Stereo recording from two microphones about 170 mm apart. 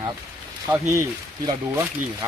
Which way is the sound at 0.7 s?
20° right (ahead or behind).